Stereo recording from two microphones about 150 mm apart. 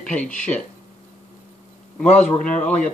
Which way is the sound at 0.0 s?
10° left (ahead or behind).